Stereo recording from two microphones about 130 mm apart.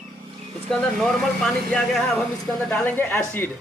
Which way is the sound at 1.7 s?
Centre (ahead or behind).